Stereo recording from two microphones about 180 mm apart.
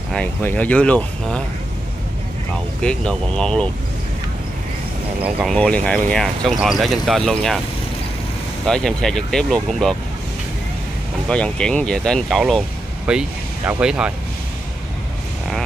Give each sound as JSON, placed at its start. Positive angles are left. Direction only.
{"t": 0.1, "sound": "speech", "side_deg": 10}
{"t": 2.8, "sound": "speech", "side_deg": 5}
{"t": 5.2, "sound": "speech", "side_deg": 0}
{"t": 8.6, "sound": "speech", "side_deg": 5}
{"t": 11.2, "sound": "speech", "side_deg": 5}